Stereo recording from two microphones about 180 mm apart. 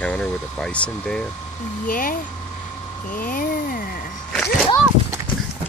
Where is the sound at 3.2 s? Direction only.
50° left (ahead or behind).